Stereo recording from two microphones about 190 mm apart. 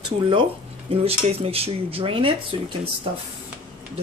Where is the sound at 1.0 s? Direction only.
30° right (ahead or behind).